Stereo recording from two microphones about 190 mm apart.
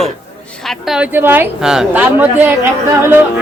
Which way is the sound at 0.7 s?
5° right (ahead or behind).